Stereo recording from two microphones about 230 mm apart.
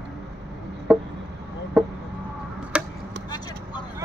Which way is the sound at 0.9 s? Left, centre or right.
Centre.